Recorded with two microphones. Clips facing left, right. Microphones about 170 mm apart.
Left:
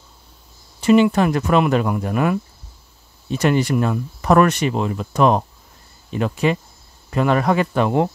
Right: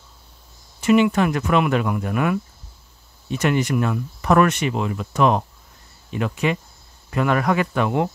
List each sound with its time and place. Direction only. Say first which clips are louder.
0.7 s speech: left 2 dB; 30° left (ahead or behind)